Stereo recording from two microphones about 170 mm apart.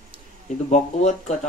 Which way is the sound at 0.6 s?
45° left (ahead or behind).